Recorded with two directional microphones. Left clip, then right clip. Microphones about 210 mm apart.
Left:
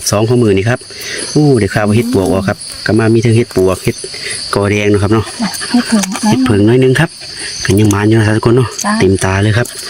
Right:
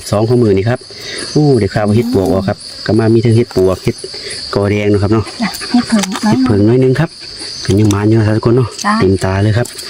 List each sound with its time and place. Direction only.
0.0 s cricket: centre (ahead or behind)
5.4 s speech: 25° left (ahead or behind)
6.3 s cricket: centre (ahead or behind)